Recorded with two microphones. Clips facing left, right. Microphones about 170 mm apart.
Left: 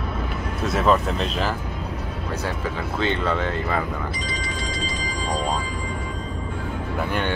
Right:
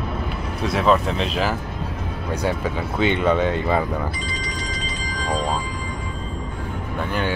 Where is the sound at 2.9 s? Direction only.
15° right (ahead or behind).